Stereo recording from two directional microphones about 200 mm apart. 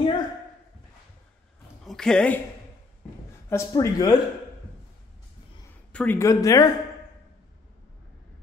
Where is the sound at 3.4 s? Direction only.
15° left (ahead or behind).